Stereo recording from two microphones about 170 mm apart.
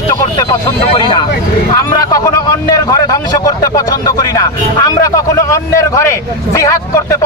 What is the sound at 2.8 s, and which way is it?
Speech, 20° left (ahead or behind).